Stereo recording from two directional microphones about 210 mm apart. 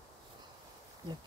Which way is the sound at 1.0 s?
20° right (ahead or behind).